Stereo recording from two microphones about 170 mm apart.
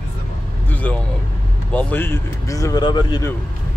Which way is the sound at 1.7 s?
10° left (ahead or behind).